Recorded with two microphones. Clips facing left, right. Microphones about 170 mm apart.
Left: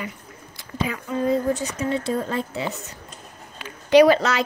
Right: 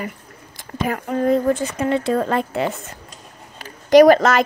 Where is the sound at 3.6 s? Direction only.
45° right (ahead or behind).